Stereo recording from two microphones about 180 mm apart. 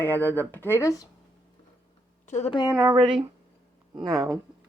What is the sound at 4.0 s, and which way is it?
Speech, 20° right (ahead or behind).